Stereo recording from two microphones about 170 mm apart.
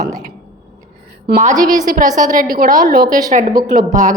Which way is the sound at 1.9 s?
55° right (ahead or behind).